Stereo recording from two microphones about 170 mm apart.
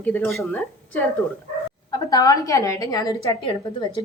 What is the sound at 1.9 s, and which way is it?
A woman's voice, 20° left (ahead or behind).